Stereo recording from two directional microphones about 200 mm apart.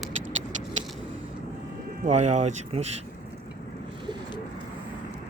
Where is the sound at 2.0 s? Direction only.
35° right (ahead or behind).